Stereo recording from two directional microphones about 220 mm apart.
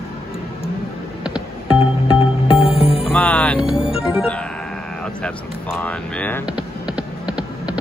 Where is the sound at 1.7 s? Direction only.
20° left (ahead or behind).